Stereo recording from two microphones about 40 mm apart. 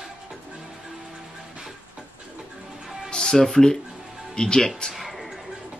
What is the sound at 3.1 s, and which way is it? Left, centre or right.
Speech, centre.